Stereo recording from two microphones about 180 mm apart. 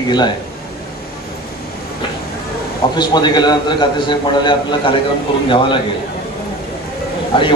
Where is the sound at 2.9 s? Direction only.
25° left (ahead or behind).